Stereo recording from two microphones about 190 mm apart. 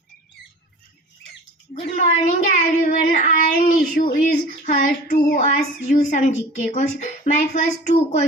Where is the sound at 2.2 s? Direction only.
45° left (ahead or behind).